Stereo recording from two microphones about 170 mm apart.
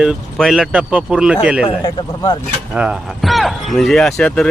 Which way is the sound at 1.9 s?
25° left (ahead or behind).